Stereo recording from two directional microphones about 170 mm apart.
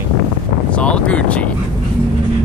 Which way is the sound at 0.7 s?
5° left (ahead or behind).